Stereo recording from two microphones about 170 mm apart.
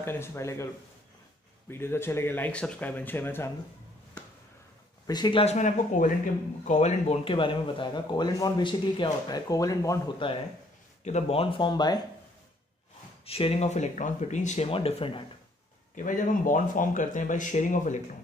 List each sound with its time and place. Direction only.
0.0 s speech: 15° left (ahead or behind)
1.7 s speech: 15° left (ahead or behind)
5.0 s speech: 25° left (ahead or behind)
5.4 s speech: 45° left (ahead or behind); by 10.2 s 20° left (ahead or behind)
11.1 s speech: 40° left (ahead or behind)
13.2 s speech: 35° left (ahead or behind)
15.9 s speech: 50° left (ahead or behind)